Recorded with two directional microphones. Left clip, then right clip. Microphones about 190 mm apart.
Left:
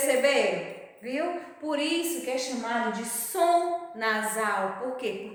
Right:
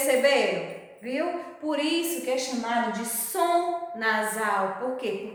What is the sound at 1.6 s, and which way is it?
A woman's voice, 20° left (ahead or behind).